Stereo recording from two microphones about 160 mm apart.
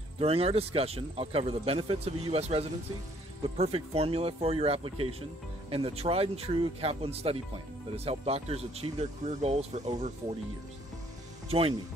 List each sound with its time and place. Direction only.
0.2 s speech: 35° right (ahead or behind)
11.4 s speech: 35° right (ahead or behind)